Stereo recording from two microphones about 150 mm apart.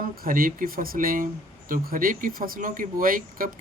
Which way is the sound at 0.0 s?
70° right (ahead or behind).